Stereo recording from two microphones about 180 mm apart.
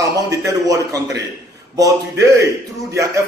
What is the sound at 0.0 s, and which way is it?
A man's voice, 20° right (ahead or behind).